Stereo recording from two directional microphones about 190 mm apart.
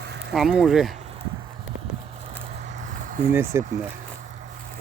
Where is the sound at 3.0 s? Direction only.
45° right (ahead or behind).